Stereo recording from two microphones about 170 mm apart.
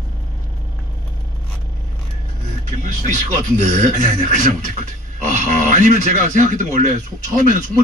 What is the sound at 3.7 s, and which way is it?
Speech, 45° right (ahead or behind).